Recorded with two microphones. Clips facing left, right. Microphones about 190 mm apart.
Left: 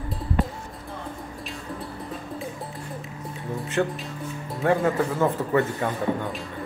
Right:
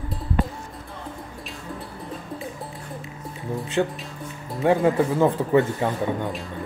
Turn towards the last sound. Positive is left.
turn(degrees=-20)  # may be behind; listen again after turning